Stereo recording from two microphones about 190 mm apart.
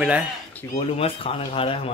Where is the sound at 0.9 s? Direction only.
30° left (ahead or behind).